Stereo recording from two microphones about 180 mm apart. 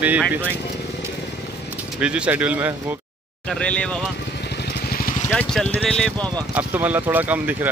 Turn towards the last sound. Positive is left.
turn(degrees=-10)  # may be behind; listen again after turning